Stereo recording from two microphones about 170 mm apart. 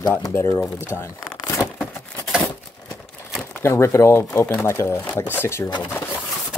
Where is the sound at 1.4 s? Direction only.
20° left (ahead or behind).